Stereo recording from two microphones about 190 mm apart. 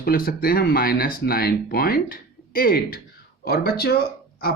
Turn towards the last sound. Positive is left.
turn(degrees=55)  # may be behind; listen again after turning